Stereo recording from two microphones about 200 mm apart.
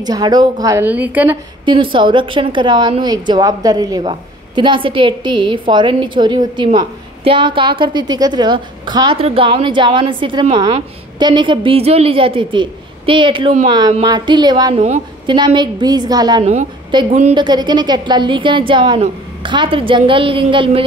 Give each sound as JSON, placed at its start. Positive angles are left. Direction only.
{"t": 0.0, "sound": "a woman's voice", "side_deg": -20}
{"t": 1.7, "sound": "a woman's voice", "side_deg": -25}
{"t": 17.1, "sound": "a woman's voice", "side_deg": -35}
{"t": 17.4, "sound": "a woman's voice", "side_deg": -20}